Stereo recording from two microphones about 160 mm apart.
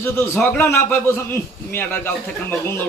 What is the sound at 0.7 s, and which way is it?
Speech, 15° left (ahead or behind).